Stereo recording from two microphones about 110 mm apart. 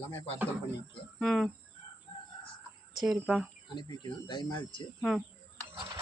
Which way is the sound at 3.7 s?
40° left (ahead or behind).